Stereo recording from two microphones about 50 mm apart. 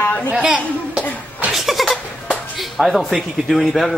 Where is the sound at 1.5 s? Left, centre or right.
Centre.